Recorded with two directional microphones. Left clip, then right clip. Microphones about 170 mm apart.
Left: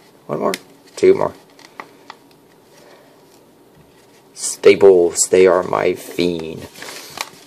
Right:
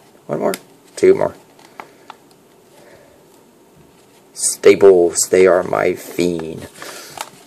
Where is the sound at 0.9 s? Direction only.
5° right (ahead or behind).